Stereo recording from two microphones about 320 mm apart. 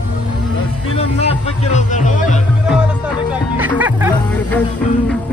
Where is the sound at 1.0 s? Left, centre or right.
Centre.